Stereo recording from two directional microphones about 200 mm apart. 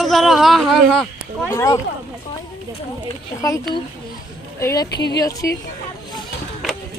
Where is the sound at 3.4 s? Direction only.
15° left (ahead or behind).